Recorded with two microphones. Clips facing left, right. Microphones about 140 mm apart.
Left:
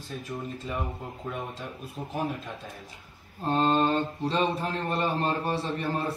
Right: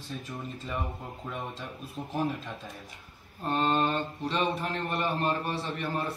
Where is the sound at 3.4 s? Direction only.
30° left (ahead or behind).